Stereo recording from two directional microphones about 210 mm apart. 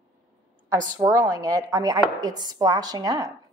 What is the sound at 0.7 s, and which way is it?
A woman's voice, 15° right (ahead or behind).